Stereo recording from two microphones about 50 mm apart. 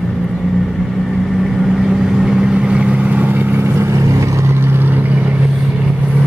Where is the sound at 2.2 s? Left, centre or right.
Centre; by 3.4 s right.